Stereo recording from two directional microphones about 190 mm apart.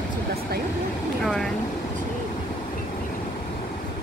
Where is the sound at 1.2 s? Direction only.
Centre (ahead or behind).